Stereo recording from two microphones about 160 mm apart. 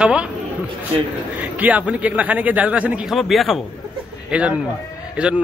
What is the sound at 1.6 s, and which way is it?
A man's voice, 10° right (ahead or behind).